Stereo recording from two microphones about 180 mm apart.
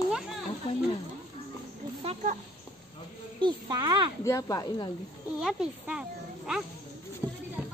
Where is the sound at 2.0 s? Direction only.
45° right (ahead or behind).